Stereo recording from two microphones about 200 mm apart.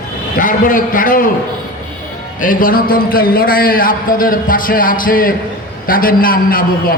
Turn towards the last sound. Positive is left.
turn(degrees=45)  # may be behind; listen again after turning